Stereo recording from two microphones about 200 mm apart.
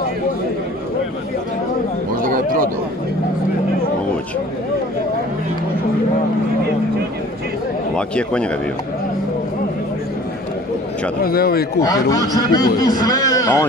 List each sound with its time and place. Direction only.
2.2 s a sound: 45° right (ahead or behind)
7.9 s a man's voice: 5° left (ahead or behind)
11.2 s speech: 50° left (ahead or behind)
11.8 s a man's voice: 20° left (ahead or behind)